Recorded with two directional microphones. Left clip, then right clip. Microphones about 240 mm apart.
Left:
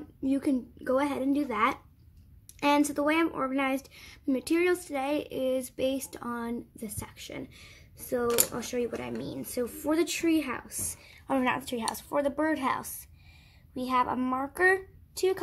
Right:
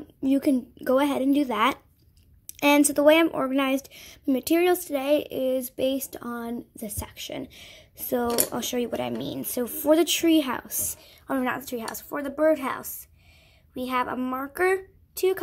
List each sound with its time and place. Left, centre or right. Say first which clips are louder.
0.2 s a woman's voice: right 6 dB; centre
7.0 s a woman's voice: right 7 dB; right
11.2 s a woman's voice: right 1 dB; centre